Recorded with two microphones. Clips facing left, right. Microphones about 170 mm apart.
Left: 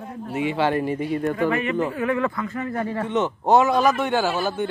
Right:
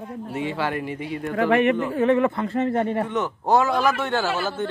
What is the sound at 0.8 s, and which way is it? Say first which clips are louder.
Speech: left 5 dB; 40° left (ahead or behind).